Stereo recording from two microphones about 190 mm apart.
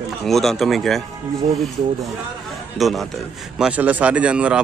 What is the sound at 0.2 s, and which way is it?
Speech, centre (ahead or behind).